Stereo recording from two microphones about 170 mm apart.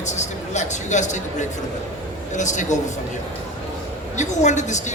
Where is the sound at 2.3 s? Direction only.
45° left (ahead or behind).